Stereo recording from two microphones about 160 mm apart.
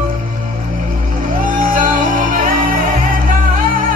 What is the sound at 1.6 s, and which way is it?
Music, 60° right (ahead or behind).